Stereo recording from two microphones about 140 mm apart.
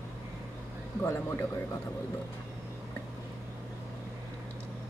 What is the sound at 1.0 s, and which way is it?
Speech, 20° left (ahead or behind).